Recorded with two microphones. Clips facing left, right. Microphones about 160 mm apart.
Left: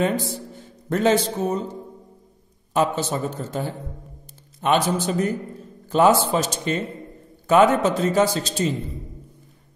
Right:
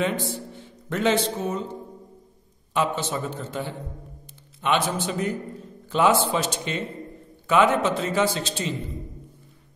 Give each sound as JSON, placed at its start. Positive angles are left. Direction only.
{"t": 0.0, "sound": "a man's voice", "side_deg": 40}
{"t": 2.7, "sound": "a man's voice", "side_deg": 40}